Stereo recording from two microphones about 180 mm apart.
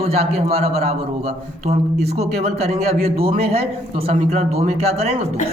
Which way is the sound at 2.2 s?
35° right (ahead or behind).